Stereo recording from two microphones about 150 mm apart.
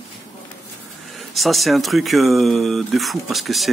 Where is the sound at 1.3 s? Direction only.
Centre (ahead or behind).